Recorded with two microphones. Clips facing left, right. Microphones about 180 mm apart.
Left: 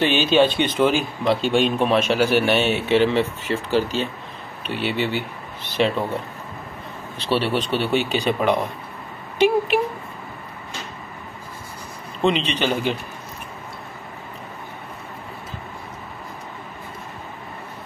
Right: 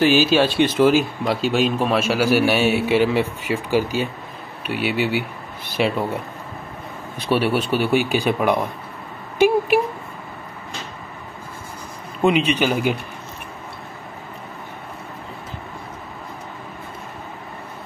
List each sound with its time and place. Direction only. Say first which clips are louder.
0.0 s speech: right 1 dB; 5° right (ahead or behind)
7.2 s speech: right 2 dB; 10° right (ahead or behind)
12.2 s speech: right 3 dB; 10° right (ahead or behind)